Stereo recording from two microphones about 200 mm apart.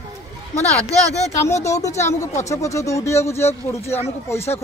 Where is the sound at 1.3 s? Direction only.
15° left (ahead or behind).